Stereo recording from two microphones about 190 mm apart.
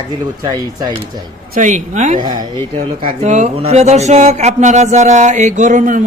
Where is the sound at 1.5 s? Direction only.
40° right (ahead or behind).